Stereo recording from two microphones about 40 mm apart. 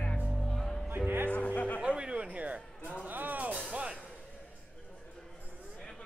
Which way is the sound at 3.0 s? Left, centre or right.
Right.